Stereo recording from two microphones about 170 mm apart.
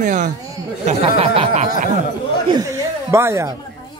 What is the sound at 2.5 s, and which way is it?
Chuckle, 20° right (ahead or behind).